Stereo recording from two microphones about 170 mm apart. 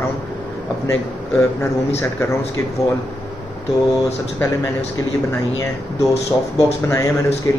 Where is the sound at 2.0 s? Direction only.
15° left (ahead or behind).